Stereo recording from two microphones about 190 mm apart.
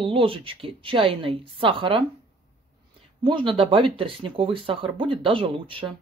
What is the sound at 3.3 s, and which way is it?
Speech, 25° right (ahead or behind).